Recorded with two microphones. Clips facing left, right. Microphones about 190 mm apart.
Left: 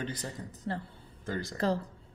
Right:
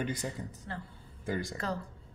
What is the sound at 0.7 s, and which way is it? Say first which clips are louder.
Speech: left 8 dB; 35° left (ahead or behind).